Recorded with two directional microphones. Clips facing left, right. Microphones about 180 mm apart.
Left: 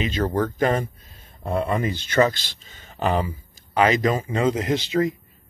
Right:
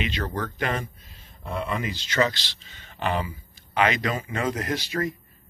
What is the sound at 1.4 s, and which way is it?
Speech, 55° left (ahead or behind).